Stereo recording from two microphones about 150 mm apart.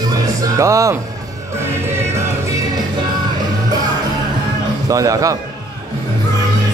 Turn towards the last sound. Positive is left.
turn(degrees=-20)  # may be behind; listen again after turning